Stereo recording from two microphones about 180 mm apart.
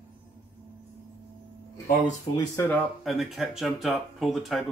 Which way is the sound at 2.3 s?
15° left (ahead or behind).